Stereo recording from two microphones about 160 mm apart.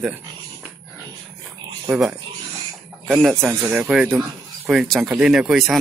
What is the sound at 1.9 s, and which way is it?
Speech, 5° right (ahead or behind).